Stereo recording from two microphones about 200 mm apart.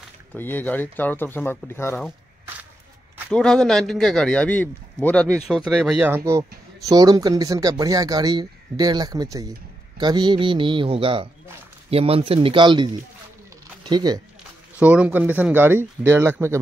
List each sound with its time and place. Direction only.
0.3 s speech: 10° left (ahead or behind)
3.3 s speech: 5° left (ahead or behind); by 14.2 s 20° right (ahead or behind)
14.8 s speech: 5° right (ahead or behind)